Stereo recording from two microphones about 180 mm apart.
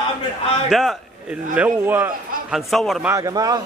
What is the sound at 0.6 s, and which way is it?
A man's voice, centre (ahead or behind).